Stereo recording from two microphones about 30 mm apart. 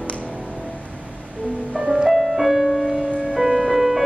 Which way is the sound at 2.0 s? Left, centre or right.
Centre.